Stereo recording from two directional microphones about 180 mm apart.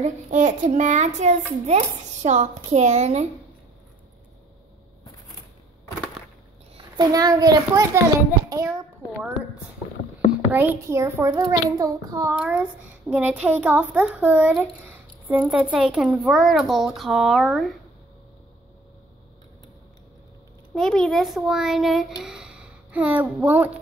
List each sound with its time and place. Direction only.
0.3 s speech: 45° right (ahead or behind)
7.0 s a child's voice: 20° right (ahead or behind)
10.5 s a child's voice: 10° right (ahead or behind)
20.7 s a child's voice: 5° left (ahead or behind)